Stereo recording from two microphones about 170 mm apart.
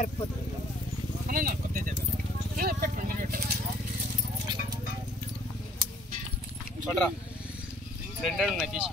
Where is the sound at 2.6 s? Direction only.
55° right (ahead or behind).